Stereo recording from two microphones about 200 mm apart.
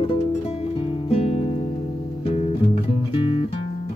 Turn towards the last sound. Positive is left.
turn(degrees=25)  # may be behind; listen again after turning